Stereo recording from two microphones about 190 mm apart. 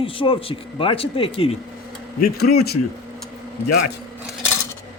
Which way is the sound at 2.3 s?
55° left (ahead or behind).